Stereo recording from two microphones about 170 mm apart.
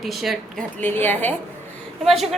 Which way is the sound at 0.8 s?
10° left (ahead or behind).